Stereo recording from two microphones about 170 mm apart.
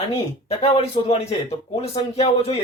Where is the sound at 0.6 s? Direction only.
35° left (ahead or behind).